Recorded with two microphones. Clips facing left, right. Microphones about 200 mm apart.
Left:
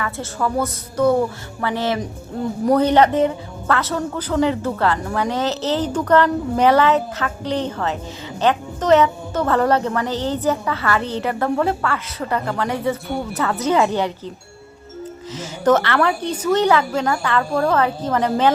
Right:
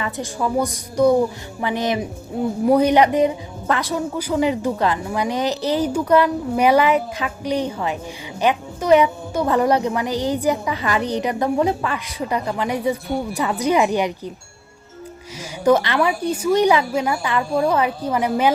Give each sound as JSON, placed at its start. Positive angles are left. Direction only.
{"t": 0.0, "sound": "a woman's voice", "side_deg": -15}
{"t": 15.4, "sound": "a woman's voice", "side_deg": -10}